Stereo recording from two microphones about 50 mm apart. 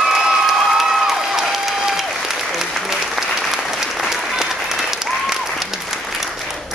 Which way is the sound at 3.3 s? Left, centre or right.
Centre.